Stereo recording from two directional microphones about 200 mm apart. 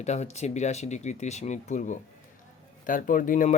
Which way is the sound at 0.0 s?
35° left (ahead or behind).